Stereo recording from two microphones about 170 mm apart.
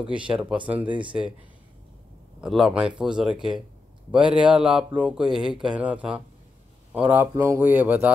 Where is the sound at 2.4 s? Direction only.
Centre (ahead or behind).